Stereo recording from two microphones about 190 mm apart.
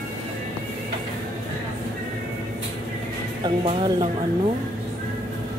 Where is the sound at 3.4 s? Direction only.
25° right (ahead or behind).